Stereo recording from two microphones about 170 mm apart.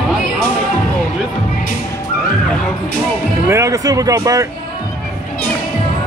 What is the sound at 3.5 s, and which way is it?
Speech, 15° right (ahead or behind).